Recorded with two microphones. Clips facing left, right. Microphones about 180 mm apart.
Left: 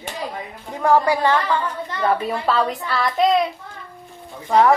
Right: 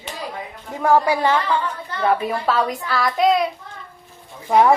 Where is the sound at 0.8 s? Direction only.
10° right (ahead or behind).